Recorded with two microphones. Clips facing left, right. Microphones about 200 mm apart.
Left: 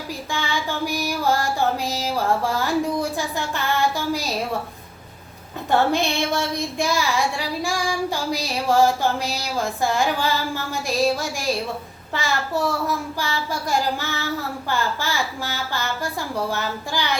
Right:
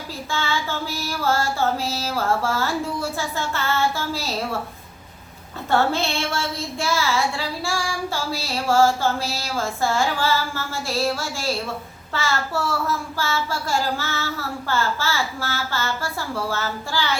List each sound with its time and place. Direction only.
0.3 s child singing: 15° left (ahead or behind)
5.7 s child singing: 15° left (ahead or behind)